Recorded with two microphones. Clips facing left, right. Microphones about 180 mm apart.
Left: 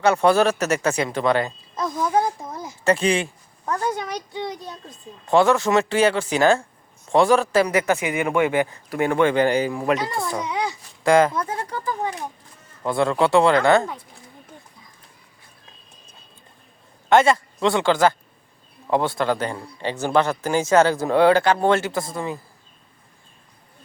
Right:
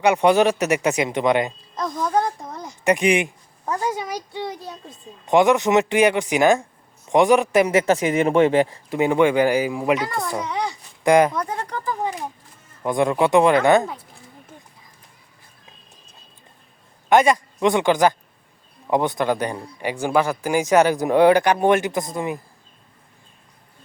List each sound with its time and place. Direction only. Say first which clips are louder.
0.0 s speech: right 1 dB; 15° right (ahead or behind)
1.7 s speech: left 1 dB; 5° left (ahead or behind)
2.8 s a man's voice: right 2 dB; 15° right (ahead or behind)
9.0 s speech: right 2 dB; 15° right (ahead or behind)
11.0 s speech: right 1 dB; 15° right (ahead or behind)
11.4 s speech: even; 5° left (ahead or behind)
12.8 s speech: right 1 dB; 15° right (ahead or behind)
17.1 s speech: even; 15° right (ahead or behind)